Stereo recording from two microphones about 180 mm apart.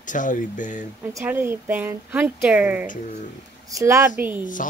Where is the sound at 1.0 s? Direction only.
15° right (ahead or behind).